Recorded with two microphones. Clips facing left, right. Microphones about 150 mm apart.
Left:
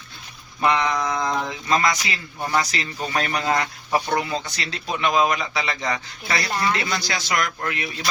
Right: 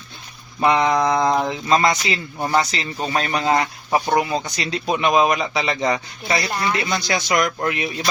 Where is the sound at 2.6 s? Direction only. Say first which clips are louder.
Right 3 dB; 25° right (ahead or behind).